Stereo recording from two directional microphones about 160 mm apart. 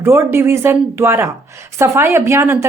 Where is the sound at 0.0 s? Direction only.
15° right (ahead or behind).